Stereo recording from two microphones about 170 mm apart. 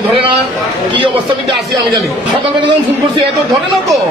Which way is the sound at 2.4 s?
30° right (ahead or behind).